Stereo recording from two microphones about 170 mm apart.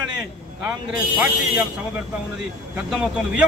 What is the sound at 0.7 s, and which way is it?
Speech, 10° right (ahead or behind).